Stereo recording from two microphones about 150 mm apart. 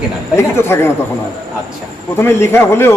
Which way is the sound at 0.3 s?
15° left (ahead or behind).